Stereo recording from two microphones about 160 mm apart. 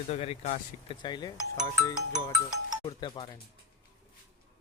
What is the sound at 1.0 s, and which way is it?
Speech, 25° left (ahead or behind).